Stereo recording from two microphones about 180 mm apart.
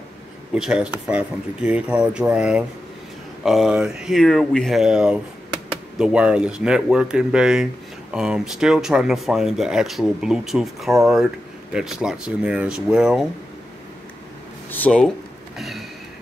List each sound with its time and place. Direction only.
0.6 s speech: 5° right (ahead or behind)
14.7 s speech: 5° left (ahead or behind)
15.5 s a sound: centre (ahead or behind)